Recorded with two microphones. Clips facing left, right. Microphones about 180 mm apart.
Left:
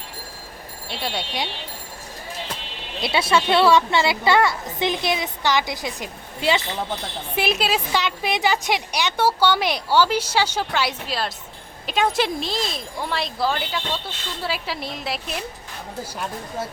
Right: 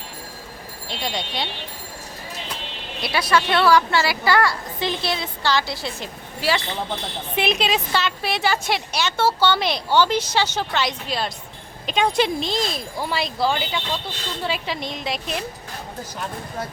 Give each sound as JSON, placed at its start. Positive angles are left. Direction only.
{"t": 0.9, "sound": "a woman's voice", "side_deg": 5}
{"t": 3.0, "sound": "a child's voice", "side_deg": 25}
{"t": 7.3, "sound": "a woman's voice", "side_deg": 5}